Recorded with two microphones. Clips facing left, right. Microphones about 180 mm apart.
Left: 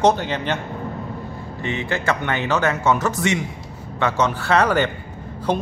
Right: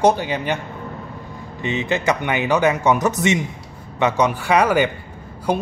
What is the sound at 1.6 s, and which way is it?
A man's voice, 20° right (ahead or behind).